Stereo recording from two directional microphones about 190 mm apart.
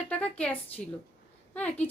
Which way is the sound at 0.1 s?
5° left (ahead or behind).